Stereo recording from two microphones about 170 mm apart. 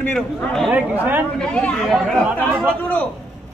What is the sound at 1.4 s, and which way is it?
A man's voice, 5° left (ahead or behind).